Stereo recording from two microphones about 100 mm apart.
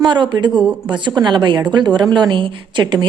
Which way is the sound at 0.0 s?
50° right (ahead or behind).